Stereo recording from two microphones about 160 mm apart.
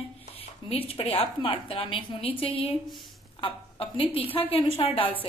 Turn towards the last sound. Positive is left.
turn(degrees=35)  # may be behind; listen again after turning